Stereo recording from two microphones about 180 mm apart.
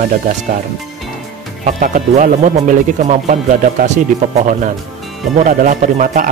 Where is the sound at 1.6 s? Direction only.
45° right (ahead or behind).